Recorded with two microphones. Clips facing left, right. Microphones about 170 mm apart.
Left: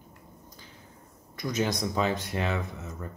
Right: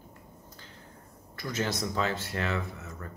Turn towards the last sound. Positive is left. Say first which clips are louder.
# left 2 dB
turn(degrees=20)  # may be behind; listen again after turning